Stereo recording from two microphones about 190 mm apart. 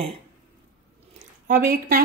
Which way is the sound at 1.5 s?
50° right (ahead or behind).